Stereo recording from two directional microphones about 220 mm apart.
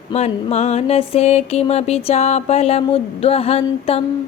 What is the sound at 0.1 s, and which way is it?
Music, 30° left (ahead or behind).